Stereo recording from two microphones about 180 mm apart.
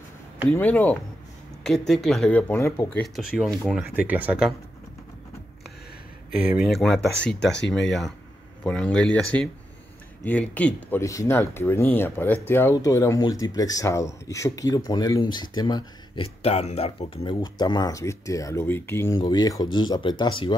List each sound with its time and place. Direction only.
0.5 s speech: 10° left (ahead or behind)
3.2 s speech: centre (ahead or behind)
6.4 s speech: 5° right (ahead or behind)
8.6 s speech: 5° left (ahead or behind); by 20.5 s 25° left (ahead or behind)